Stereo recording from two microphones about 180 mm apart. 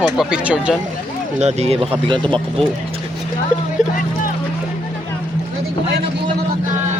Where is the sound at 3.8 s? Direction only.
25° right (ahead or behind).